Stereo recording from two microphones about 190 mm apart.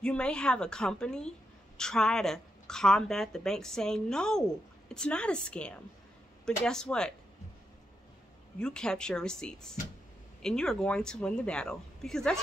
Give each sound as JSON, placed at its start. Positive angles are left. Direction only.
{"t": 0.0, "sound": "a woman's voice", "side_deg": 5}
{"t": 8.5, "sound": "a woman's voice", "side_deg": 5}